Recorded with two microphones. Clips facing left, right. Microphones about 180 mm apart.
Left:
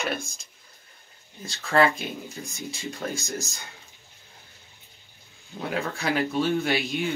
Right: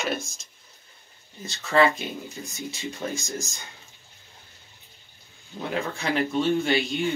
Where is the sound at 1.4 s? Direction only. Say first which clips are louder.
Right 1 dB; centre (ahead or behind).